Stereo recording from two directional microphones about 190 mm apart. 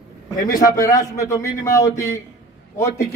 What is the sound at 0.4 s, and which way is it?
Speech, 45° left (ahead or behind).